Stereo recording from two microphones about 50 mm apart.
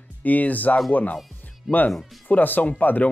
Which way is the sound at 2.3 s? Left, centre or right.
Left.